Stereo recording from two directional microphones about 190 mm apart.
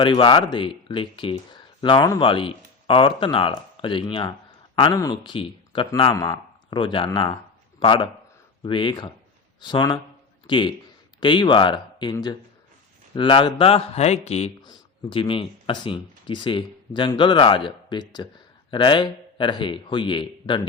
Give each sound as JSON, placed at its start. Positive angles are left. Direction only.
{"t": 0.0, "sound": "a man's voice", "side_deg": 25}